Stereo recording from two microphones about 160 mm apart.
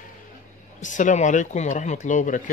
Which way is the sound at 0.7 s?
50° left (ahead or behind).